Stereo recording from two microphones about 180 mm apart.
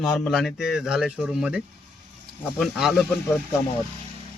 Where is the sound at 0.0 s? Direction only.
Centre (ahead or behind).